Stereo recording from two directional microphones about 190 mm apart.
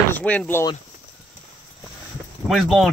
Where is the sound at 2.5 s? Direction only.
Centre (ahead or behind).